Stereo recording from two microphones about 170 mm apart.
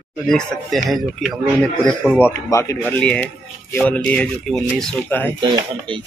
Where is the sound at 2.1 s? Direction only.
15° left (ahead or behind).